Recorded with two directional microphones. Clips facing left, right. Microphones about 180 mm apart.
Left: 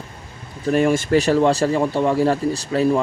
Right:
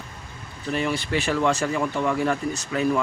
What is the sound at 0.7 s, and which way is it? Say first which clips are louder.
Speech: left 9 dB; 45° left (ahead or behind).